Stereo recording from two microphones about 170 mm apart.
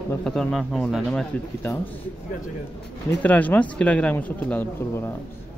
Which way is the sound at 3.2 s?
10° left (ahead or behind).